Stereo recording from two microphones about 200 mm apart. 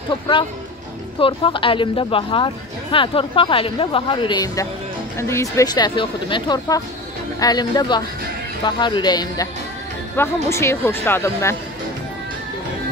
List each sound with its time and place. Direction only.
1.2 s speech: 25° left (ahead or behind)